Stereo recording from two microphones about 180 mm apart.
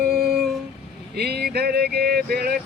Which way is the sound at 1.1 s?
60° right (ahead or behind).